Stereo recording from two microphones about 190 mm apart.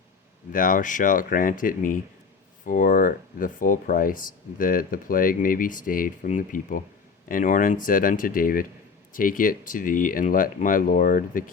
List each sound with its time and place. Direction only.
0.5 s speech: 45° left (ahead or behind)